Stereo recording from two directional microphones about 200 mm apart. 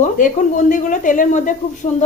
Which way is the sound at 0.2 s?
40° left (ahead or behind).